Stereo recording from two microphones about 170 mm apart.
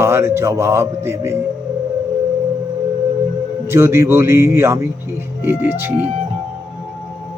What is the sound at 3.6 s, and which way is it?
Speech, 15° right (ahead or behind).